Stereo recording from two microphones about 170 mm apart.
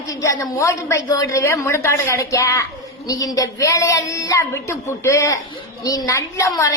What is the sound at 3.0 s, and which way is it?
A woman's voice, 20° left (ahead or behind).